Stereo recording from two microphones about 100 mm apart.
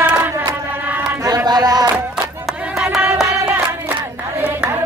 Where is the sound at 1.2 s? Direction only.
35° right (ahead or behind).